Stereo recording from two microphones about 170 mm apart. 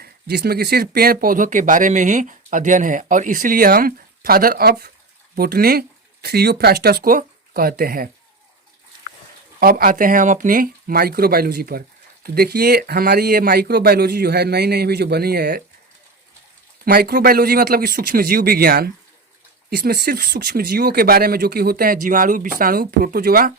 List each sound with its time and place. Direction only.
0.0 s speech: 70° right (ahead or behind)
9.6 s speech: 60° right (ahead or behind)
16.8 s speech: 65° right (ahead or behind)